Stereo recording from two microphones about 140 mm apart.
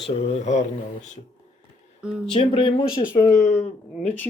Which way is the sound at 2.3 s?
40° left (ahead or behind).